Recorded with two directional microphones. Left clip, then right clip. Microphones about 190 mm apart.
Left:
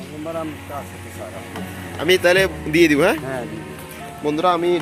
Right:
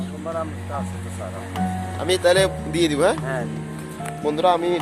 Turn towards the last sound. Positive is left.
turn(degrees=-25)  # may be behind; listen again after turning